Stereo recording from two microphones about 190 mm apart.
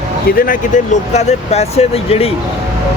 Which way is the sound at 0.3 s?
50° left (ahead or behind).